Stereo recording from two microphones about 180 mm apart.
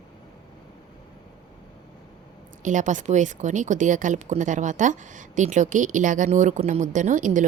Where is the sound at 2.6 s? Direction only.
45° right (ahead or behind).